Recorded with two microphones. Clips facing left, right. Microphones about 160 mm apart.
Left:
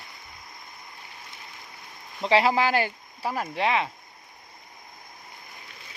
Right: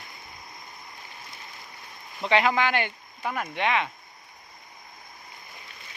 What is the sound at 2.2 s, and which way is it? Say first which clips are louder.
Speech: left 2 dB; 30° left (ahead or behind).